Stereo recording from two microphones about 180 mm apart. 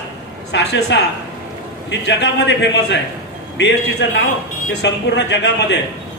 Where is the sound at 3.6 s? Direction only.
75° left (ahead or behind).